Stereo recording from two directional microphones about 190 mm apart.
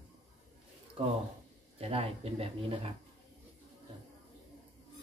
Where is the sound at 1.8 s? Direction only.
30° right (ahead or behind).